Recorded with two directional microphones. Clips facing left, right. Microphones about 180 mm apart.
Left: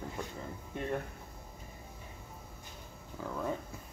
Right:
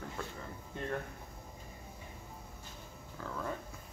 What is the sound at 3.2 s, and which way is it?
Speech, 15° left (ahead or behind).